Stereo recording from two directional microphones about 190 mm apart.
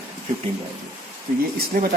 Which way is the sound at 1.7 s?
50° right (ahead or behind).